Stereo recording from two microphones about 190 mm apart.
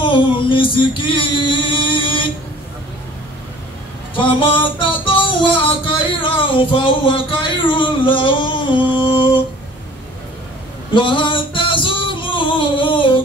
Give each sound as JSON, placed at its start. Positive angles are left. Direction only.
{"t": 0.0, "sound": "music", "side_deg": 25}
{"t": 4.1, "sound": "music", "side_deg": 25}
{"t": 10.9, "sound": "singing", "side_deg": 25}